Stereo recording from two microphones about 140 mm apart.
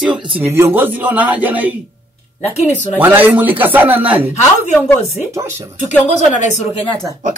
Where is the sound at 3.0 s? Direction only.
15° right (ahead or behind).